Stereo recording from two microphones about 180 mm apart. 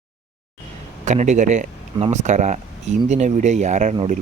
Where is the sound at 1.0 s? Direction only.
40° right (ahead or behind).